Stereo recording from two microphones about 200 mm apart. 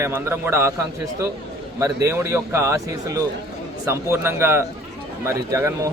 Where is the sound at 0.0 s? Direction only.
10° right (ahead or behind).